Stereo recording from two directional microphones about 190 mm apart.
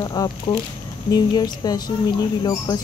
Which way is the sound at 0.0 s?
20° left (ahead or behind).